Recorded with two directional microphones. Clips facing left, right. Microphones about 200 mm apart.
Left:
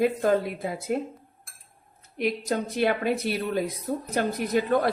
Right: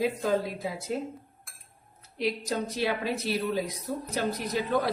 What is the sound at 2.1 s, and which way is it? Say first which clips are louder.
Speech: left 3 dB; 55° left (ahead or behind).